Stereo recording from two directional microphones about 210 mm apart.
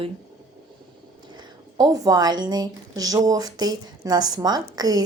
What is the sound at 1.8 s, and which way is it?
Speech, 15° right (ahead or behind).